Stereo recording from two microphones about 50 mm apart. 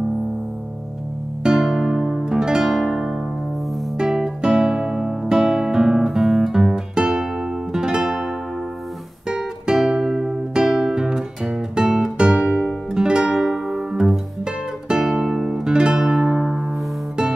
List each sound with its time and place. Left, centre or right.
1.4 s music: centre
4.0 s guitar: centre
7.7 s music: centre
9.3 s music: centre
12.4 s music: right